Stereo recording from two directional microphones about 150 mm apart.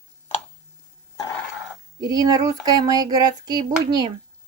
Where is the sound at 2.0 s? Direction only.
25° right (ahead or behind).